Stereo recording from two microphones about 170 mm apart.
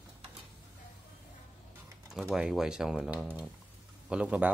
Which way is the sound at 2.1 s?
5° right (ahead or behind).